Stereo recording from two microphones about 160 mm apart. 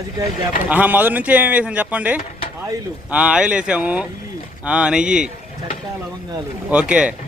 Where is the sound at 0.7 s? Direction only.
10° right (ahead or behind).